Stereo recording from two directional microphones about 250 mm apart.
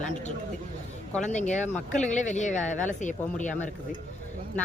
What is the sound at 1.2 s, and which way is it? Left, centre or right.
Speech, left.